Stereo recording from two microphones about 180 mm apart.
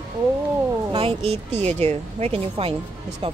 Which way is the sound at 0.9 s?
30° right (ahead or behind).